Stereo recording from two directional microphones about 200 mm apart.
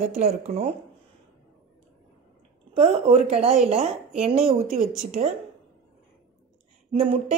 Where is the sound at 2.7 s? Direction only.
35° right (ahead or behind).